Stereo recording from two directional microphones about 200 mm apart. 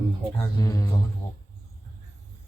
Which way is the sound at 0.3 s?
15° left (ahead or behind).